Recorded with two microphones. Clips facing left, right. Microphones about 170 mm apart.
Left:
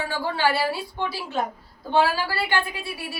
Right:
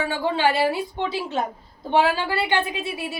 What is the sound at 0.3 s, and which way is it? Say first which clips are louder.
A woman's voice: right 3 dB; 20° right (ahead or behind).